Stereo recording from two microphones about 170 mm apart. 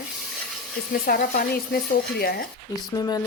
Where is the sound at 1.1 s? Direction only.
60° left (ahead or behind).